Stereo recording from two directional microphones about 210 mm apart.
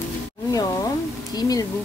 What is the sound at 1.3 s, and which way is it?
Speech, 20° left (ahead or behind).